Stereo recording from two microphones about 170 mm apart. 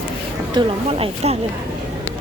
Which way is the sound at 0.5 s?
35° right (ahead or behind).